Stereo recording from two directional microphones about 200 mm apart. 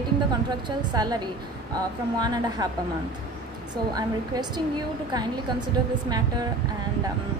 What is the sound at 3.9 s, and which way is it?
A woman's voice, 20° right (ahead or behind).